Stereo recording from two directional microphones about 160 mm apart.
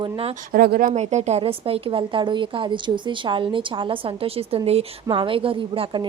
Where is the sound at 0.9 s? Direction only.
45° right (ahead or behind).